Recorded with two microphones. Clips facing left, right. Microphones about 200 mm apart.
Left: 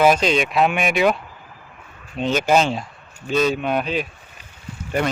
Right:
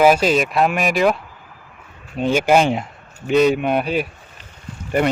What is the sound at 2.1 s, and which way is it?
Speech, 10° right (ahead or behind).